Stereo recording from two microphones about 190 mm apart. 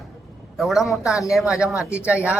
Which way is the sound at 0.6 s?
Centre (ahead or behind).